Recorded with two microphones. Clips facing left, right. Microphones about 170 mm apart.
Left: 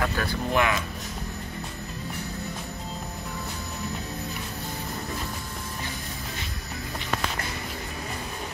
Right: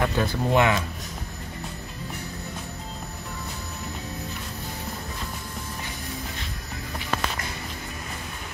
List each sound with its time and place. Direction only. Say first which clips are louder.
0.0 s speech: right 3 dB; 20° right (ahead or behind)